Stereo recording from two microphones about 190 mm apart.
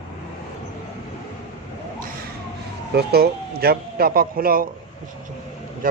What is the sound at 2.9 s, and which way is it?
Speech, 55° right (ahead or behind).